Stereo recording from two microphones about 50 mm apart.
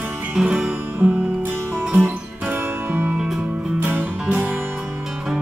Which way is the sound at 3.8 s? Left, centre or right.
Right.